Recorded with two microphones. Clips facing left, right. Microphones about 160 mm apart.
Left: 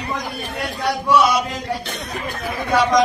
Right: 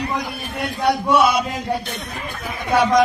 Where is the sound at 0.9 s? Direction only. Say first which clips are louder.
Even; 55° right (ahead or behind).